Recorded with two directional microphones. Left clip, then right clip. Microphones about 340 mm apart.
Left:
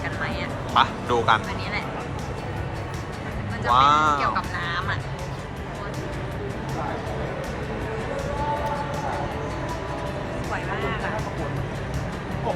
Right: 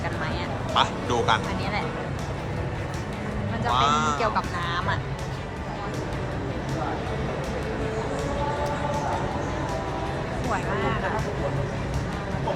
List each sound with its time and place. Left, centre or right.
0.7 s speech: centre
3.7 s speech: centre
4.4 s speech: centre